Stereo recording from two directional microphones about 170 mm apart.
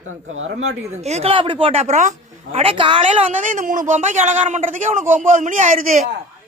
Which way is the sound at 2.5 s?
30° right (ahead or behind).